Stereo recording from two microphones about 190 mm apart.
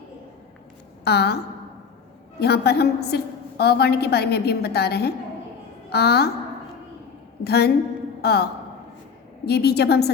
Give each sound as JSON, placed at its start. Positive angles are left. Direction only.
{"t": 1.0, "sound": "a woman's voice", "side_deg": 60}
{"t": 2.4, "sound": "a woman's voice", "side_deg": 60}
{"t": 7.4, "sound": "a woman's voice", "side_deg": 60}
{"t": 9.5, "sound": "a woman's voice", "side_deg": 60}